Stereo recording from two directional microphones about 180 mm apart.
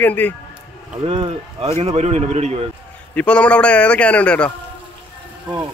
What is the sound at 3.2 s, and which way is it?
Speech, 5° left (ahead or behind).